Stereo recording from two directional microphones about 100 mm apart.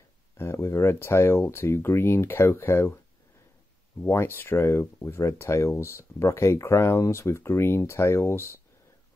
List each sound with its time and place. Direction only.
0.4 s speech: 25° left (ahead or behind)
4.0 s speech: 20° left (ahead or behind)